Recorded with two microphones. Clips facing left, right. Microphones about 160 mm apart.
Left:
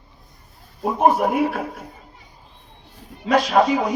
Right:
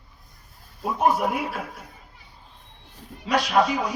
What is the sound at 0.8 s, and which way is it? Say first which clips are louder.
A man's voice: left 4 dB; 45° left (ahead or behind).